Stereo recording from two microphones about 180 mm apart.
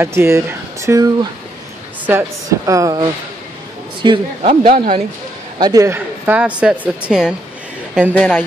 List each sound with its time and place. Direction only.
0.0 s speech: 15° right (ahead or behind)
4.4 s speech: 40° right (ahead or behind)
5.6 s speech: 20° right (ahead or behind)
8.1 s a woman's voice: 10° left (ahead or behind)